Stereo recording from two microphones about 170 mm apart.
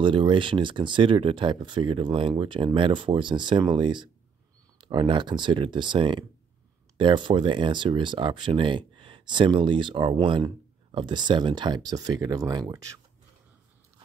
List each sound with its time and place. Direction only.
0.0 s speech: 30° right (ahead or behind)